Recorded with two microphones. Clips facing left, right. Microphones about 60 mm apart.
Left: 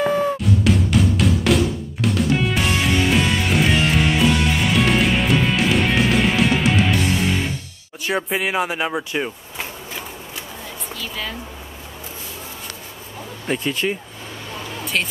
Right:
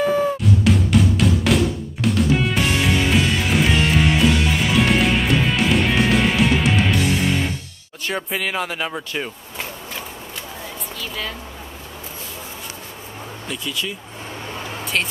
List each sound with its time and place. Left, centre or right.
0.0 s drum: centre
8.0 s speech: centre
11.0 s music: centre
13.5 s speech: left